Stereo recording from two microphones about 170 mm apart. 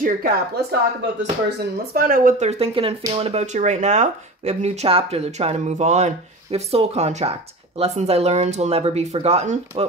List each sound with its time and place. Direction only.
0.0 s speech: 55° right (ahead or behind)
2.0 s speech: 55° right (ahead or behind)
2.4 s speech: 35° right (ahead or behind)